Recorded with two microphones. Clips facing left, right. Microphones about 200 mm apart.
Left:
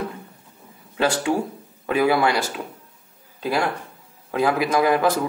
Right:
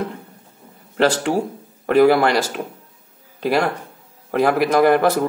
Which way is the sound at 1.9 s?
65° right (ahead or behind).